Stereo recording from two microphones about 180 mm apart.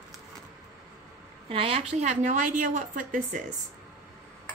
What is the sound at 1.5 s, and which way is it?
A woman's voice, 30° right (ahead or behind).